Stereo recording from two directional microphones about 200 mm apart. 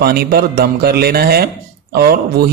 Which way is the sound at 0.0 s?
50° right (ahead or behind).